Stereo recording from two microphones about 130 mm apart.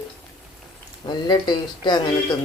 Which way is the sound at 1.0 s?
35° left (ahead or behind).